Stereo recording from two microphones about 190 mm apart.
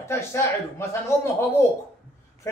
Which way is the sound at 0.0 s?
15° left (ahead or behind).